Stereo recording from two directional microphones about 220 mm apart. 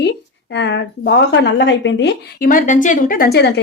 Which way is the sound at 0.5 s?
55° left (ahead or behind).